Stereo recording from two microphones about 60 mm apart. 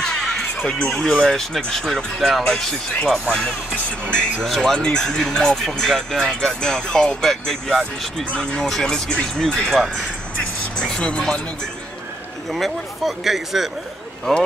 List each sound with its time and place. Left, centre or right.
0.0 s music: centre
0.8 s speech: centre
8.3 s speech: centre
10.8 s speech: centre
12.4 s speech: centre